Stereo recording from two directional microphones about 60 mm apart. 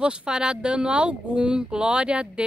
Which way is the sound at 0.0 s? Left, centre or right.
Centre.